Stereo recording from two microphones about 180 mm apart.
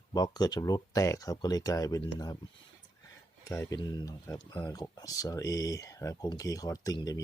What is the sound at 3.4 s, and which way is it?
Speech, 15° left (ahead or behind).